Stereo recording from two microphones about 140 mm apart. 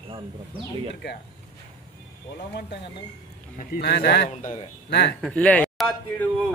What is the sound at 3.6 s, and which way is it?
A man's voice, 80° left.